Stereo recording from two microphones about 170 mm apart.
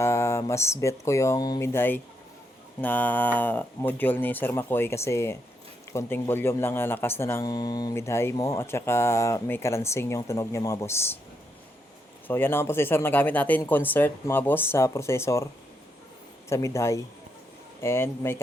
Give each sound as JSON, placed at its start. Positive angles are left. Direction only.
{"t": 0.0, "sound": "speech", "side_deg": 15}
{"t": 12.3, "sound": "speech", "side_deg": 15}
{"t": 16.5, "sound": "speech", "side_deg": 15}